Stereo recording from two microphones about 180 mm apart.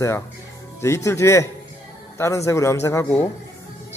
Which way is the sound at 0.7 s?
15° left (ahead or behind).